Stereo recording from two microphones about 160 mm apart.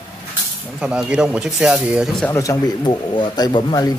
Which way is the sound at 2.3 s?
25° left (ahead or behind).